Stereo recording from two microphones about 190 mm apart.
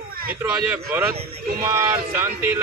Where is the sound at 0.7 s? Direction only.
10° right (ahead or behind).